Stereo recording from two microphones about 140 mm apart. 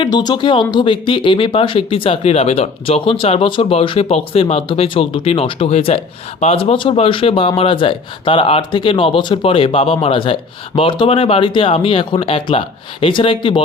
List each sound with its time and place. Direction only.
0.0 s speech: 30° left (ahead or behind)